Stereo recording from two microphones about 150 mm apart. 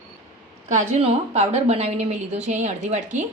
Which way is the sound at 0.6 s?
50° right (ahead or behind).